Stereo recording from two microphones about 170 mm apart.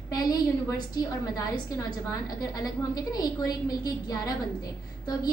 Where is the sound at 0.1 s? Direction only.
20° left (ahead or behind).